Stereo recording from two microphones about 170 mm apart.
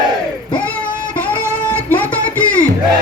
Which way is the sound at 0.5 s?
10° left (ahead or behind).